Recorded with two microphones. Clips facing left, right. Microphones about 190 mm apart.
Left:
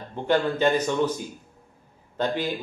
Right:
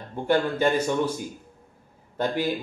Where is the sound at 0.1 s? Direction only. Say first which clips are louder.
Even; 10° right (ahead or behind).